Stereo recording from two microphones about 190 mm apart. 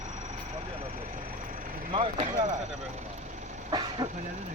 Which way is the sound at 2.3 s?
40° right (ahead or behind).